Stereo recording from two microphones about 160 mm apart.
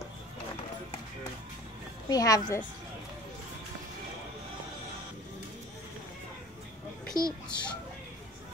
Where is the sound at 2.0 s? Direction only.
20° left (ahead or behind).